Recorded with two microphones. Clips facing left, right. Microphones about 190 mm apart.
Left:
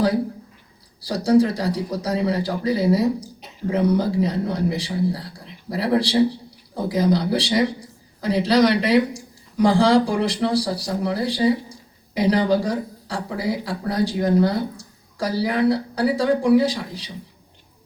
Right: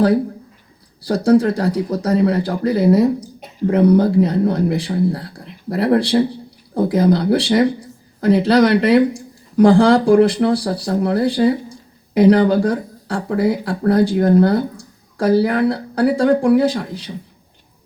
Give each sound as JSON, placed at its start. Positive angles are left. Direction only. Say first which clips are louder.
{"t": 1.0, "sound": "speech", "louder": "right 3 dB", "side_deg": -55}